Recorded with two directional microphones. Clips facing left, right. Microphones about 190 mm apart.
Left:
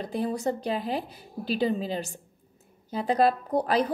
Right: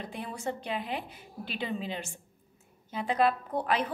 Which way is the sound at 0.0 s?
40° left (ahead or behind).